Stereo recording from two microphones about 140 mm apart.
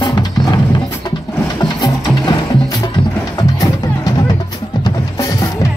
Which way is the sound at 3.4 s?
25° left (ahead or behind).